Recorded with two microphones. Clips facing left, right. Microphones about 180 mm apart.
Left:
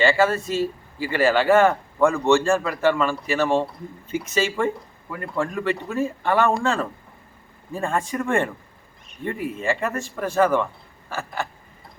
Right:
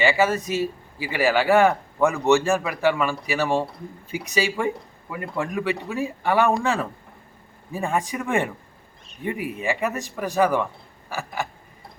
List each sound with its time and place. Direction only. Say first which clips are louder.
0.0 s speech: left 1 dB; 15° right (ahead or behind)
9.2 s speech: left 1 dB; 15° right (ahead or behind)